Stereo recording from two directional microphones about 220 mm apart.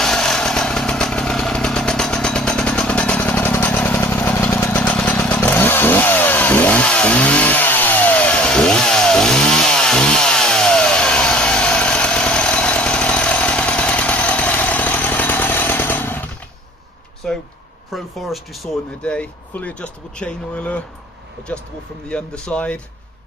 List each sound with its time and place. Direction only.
0.0 s motorcycle: 5° left (ahead or behind)
17.2 s a sound: 5° left (ahead or behind)
17.9 s speech: centre (ahead or behind)
22.1 s speech: 5° left (ahead or behind)